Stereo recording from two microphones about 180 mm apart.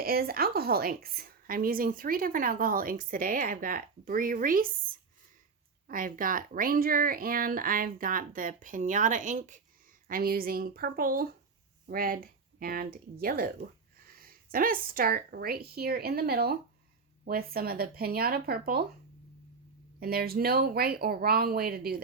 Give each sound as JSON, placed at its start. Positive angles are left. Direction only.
{"t": 0.0, "sound": "speech", "side_deg": -55}
{"t": 5.9, "sound": "speech", "side_deg": -50}
{"t": 20.0, "sound": "speech", "side_deg": -55}